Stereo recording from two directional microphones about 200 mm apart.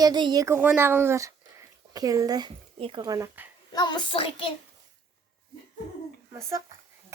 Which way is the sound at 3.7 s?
20° left (ahead or behind).